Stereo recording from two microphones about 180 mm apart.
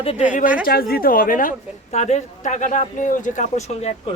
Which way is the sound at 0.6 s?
55° left (ahead or behind).